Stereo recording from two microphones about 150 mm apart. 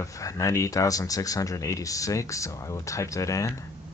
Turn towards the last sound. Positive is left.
turn(degrees=20)  # may be behind; listen again after turning